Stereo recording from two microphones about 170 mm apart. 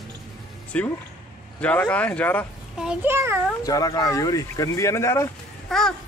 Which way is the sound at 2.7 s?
5° right (ahead or behind).